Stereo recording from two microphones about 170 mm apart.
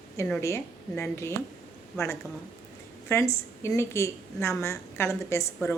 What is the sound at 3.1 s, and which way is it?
A woman's voice, 15° left (ahead or behind).